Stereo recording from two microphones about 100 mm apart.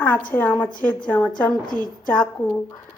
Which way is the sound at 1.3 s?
45° left (ahead or behind).